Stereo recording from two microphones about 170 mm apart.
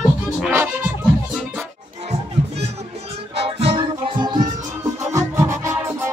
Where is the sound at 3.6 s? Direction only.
30° right (ahead or behind).